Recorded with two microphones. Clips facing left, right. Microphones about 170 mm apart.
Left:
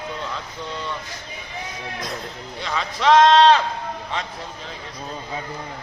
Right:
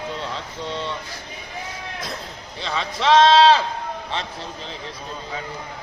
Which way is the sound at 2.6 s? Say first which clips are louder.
Left 1 dB; 30° right (ahead or behind).